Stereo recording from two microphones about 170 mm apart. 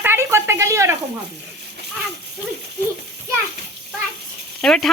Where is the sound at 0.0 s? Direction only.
15° right (ahead or behind).